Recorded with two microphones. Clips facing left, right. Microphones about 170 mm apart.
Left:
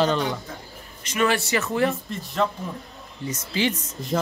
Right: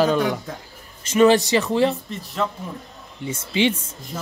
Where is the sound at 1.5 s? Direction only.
15° right (ahead or behind).